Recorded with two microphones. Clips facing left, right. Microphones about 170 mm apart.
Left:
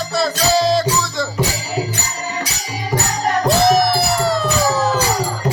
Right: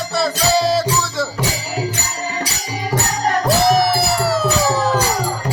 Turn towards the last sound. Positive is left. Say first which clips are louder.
# even
turn(degrees=0)  # may be behind; listen again after turning